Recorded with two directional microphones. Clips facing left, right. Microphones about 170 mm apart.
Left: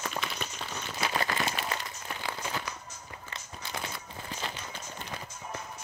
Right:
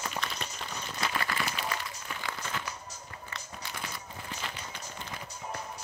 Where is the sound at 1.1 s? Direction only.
40° left (ahead or behind).